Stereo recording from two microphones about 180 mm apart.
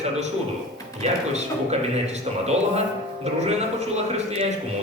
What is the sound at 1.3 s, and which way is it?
A man's voice, 40° right (ahead or behind).